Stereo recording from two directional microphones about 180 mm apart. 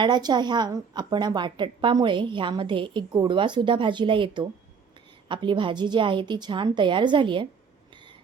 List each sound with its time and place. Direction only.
0.0 s a woman's voice: 25° right (ahead or behind)